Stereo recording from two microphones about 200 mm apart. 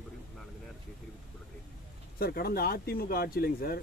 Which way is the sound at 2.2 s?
50° left (ahead or behind).